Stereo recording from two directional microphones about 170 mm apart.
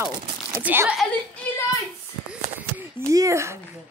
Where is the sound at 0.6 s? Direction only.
10° right (ahead or behind).